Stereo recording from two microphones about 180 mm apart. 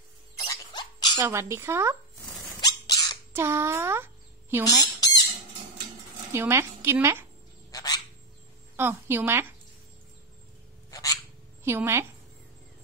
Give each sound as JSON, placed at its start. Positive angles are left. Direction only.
{"t": 0.4, "sound": "dog", "side_deg": 25}
{"t": 1.2, "sound": "a woman's voice", "side_deg": -15}
{"t": 2.6, "sound": "a sound", "side_deg": 20}
{"t": 3.3, "sound": "a child's voice", "side_deg": -15}
{"t": 6.3, "sound": "a woman's voice", "side_deg": -15}
{"t": 7.7, "sound": "a sound", "side_deg": 20}
{"t": 8.7, "sound": "a woman's voice", "side_deg": -15}
{"t": 10.9, "sound": "a sound", "side_deg": 20}
{"t": 11.6, "sound": "a woman's voice", "side_deg": -15}